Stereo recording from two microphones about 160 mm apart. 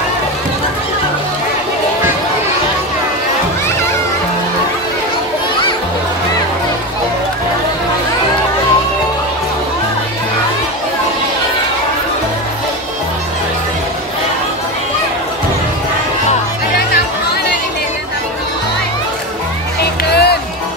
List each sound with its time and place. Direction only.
20.1 s music: 90° left